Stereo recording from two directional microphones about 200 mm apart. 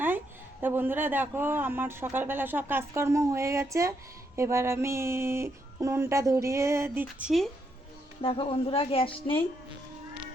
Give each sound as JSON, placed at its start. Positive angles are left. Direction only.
{"t": 0.6, "sound": "speech", "side_deg": -10}
{"t": 8.2, "sound": "a woman's voice", "side_deg": 25}